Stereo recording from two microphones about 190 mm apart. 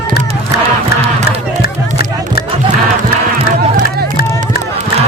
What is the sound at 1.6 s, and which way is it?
Music, 55° left (ahead or behind).